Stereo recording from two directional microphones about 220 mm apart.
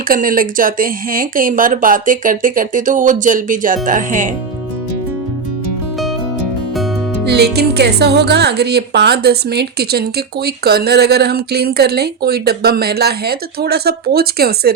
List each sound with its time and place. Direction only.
0.1 s speech: 40° right (ahead or behind)
7.3 s speech: 50° right (ahead or behind)